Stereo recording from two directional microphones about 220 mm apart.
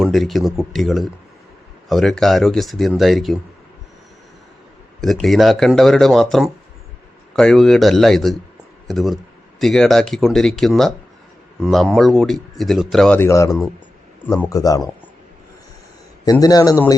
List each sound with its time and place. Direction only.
0.0 s speech: centre (ahead or behind)
4.9 s speech: centre (ahead or behind)
16.2 s speech: 15° left (ahead or behind)